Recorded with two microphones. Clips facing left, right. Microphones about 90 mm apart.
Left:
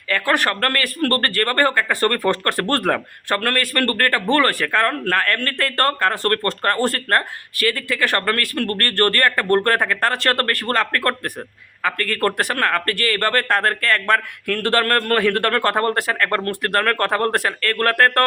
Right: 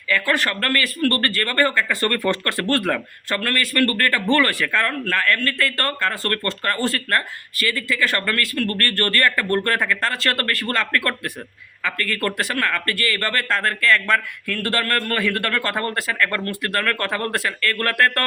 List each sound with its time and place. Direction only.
0.1 s speech: 50° left (ahead or behind)
2.0 s speech: 35° left (ahead or behind)